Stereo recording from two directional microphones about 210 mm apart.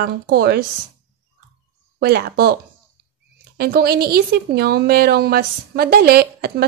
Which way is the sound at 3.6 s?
50° right (ahead or behind).